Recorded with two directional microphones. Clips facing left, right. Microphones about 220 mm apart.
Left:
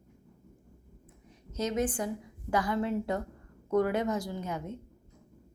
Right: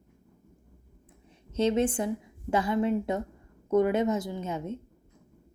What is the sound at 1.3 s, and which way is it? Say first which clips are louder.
A woman's voice: right 7 dB; 30° right (ahead or behind).